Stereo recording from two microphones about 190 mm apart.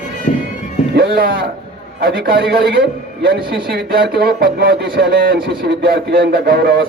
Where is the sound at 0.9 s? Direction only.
55° right (ahead or behind).